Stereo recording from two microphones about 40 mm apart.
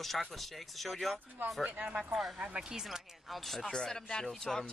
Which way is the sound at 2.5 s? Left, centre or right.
Centre.